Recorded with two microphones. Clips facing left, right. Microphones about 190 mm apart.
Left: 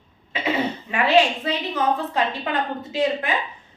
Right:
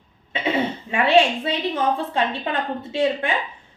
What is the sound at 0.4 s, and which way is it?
A woman's voice, 30° right (ahead or behind).